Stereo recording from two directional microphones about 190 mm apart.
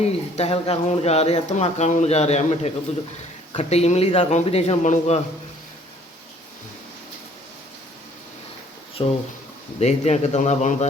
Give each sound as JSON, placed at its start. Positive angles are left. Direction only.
{"t": 0.0, "sound": "speech", "side_deg": 35}
{"t": 9.0, "sound": "speech", "side_deg": 25}
{"t": 9.8, "sound": "speech", "side_deg": 35}